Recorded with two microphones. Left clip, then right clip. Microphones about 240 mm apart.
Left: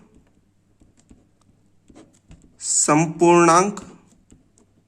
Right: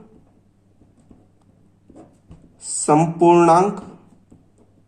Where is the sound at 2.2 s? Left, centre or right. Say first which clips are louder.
Left 8 dB; left.